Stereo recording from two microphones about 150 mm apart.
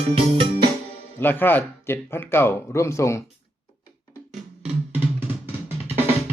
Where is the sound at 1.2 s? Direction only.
15° left (ahead or behind).